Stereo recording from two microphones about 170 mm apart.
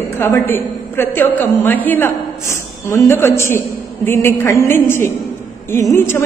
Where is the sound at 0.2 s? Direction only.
15° left (ahead or behind).